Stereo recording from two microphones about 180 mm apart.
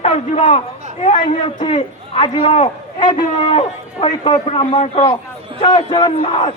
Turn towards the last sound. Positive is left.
turn(degrees=30)  # may be behind; listen again after turning